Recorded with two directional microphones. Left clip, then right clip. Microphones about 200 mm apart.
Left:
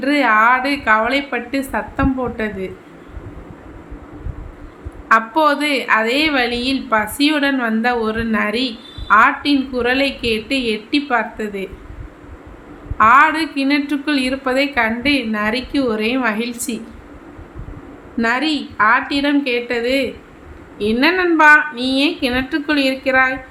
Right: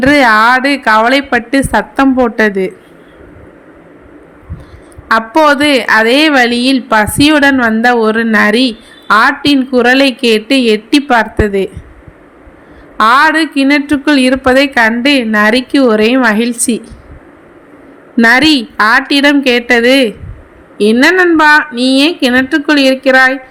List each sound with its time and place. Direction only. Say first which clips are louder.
0.0 s a woman's voice: right 7 dB; 40° right (ahead or behind)
5.0 s a woman's voice: right 6 dB; 40° right (ahead or behind)
13.0 s a woman's voice: right 4 dB; 40° right (ahead or behind)
18.2 s a woman's voice: right 11 dB; 45° right (ahead or behind)